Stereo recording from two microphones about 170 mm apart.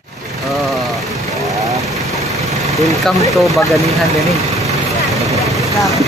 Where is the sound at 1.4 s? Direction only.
20° right (ahead or behind).